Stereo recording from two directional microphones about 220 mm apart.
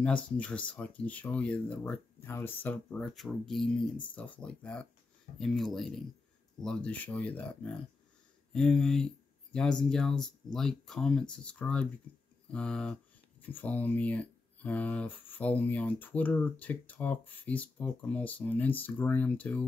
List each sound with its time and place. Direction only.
0.0 s speech: 5° left (ahead or behind)